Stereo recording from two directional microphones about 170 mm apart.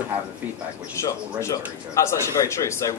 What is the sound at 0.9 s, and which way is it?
A man's voice, 15° left (ahead or behind).